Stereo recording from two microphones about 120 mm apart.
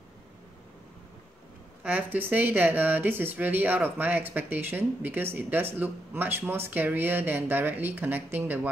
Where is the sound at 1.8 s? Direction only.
15° right (ahead or behind).